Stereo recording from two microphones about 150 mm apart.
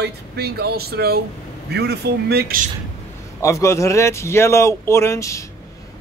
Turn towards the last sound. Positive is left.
turn(degrees=20)  # may be behind; listen again after turning